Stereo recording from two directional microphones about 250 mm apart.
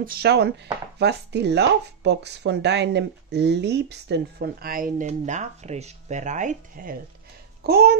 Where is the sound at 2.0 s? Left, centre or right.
Right.